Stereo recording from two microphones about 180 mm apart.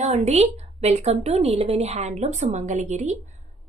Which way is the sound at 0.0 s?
40° right (ahead or behind).